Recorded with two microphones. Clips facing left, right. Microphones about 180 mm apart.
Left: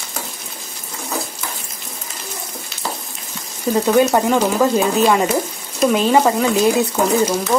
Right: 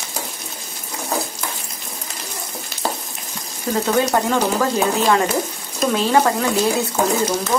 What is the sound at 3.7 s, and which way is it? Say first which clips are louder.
Speech: left 4 dB; 10° left (ahead or behind).